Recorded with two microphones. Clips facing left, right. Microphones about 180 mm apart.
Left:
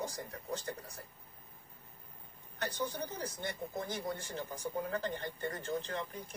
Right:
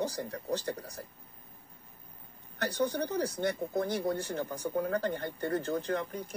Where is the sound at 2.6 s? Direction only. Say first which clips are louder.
Right 7 dB; 75° right (ahead or behind).